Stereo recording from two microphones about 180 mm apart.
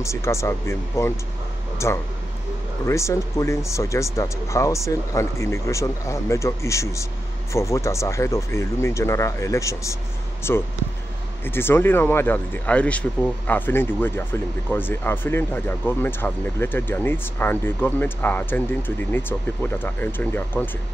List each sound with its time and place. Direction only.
0.0 s speech: 15° left (ahead or behind)